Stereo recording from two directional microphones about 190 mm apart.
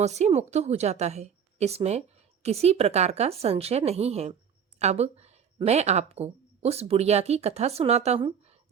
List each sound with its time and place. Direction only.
0.0 s a woman's voice: 35° right (ahead or behind)